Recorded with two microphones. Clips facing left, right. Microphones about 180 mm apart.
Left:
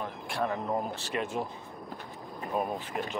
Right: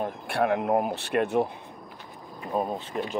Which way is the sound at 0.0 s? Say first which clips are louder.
Right 6 dB; 65° right (ahead or behind).